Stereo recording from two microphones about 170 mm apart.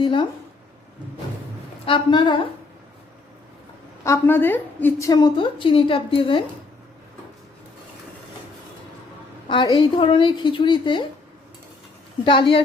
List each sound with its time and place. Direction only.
0.0 s a woman's voice: 30° left (ahead or behind)
1.8 s a woman's voice: 30° left (ahead or behind)
4.0 s a woman's voice: 15° left (ahead or behind); by 6.4 s 30° left (ahead or behind)
9.5 s a woman's voice: 30° left (ahead or behind)
12.2 s a woman's voice: 30° left (ahead or behind)